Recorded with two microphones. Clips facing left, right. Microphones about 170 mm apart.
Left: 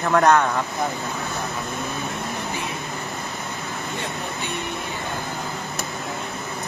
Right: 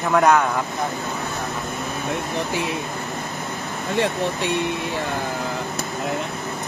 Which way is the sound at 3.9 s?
85° right.